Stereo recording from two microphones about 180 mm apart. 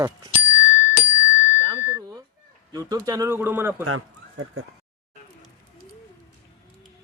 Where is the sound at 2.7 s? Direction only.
20° right (ahead or behind).